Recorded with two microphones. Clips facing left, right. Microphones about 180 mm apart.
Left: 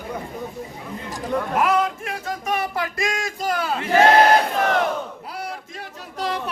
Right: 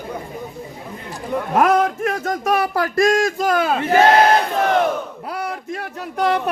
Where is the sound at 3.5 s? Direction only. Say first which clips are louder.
Right 3 dB; 60° right (ahead or behind).